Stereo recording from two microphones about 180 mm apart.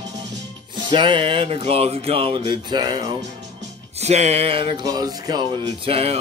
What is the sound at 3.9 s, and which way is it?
Speech, 40° right (ahead or behind).